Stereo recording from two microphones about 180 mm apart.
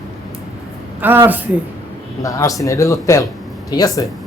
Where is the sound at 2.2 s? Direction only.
20° left (ahead or behind).